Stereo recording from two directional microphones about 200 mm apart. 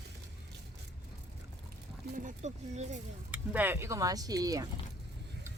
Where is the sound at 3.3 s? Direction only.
10° right (ahead or behind).